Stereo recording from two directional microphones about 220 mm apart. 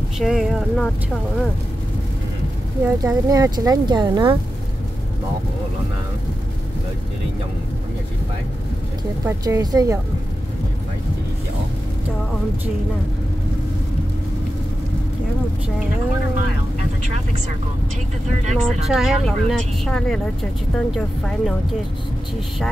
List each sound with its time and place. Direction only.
0.2 s speech: centre (ahead or behind)
2.8 s speech: 10° right (ahead or behind)
9.2 s speech: 15° right (ahead or behind)
18.9 s speech: centre (ahead or behind)